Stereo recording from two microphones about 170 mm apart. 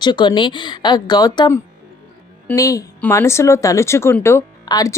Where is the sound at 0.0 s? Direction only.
25° left (ahead or behind).